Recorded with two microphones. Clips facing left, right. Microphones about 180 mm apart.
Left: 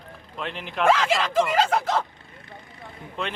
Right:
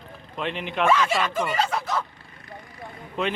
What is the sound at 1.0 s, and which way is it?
Speech, 90° left.